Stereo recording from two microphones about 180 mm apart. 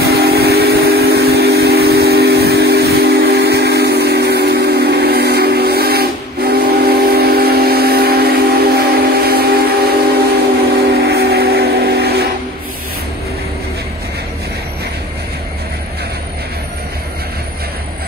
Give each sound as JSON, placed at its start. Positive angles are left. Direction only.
{"t": 0.0, "sound": "steam whistle", "side_deg": -60}